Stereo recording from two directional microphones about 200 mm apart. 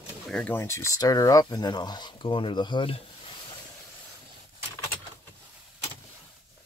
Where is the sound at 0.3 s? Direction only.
5° left (ahead or behind); by 3.0 s 25° left (ahead or behind).